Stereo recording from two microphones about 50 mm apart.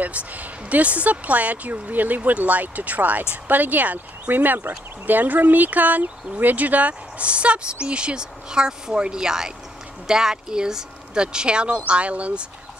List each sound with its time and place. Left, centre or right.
0.0 s speech: right